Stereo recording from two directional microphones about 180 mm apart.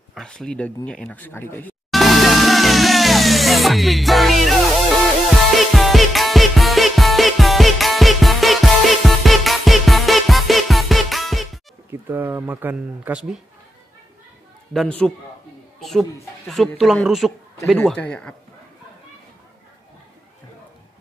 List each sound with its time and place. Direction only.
0.1 s speech: centre (ahead or behind)
0.8 s music: 5° left (ahead or behind)
11.9 s speech: 10° right (ahead or behind)
14.7 s a man's voice: 5° left (ahead or behind)